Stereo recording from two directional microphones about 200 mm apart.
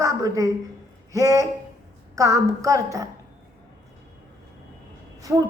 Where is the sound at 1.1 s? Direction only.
15° right (ahead or behind).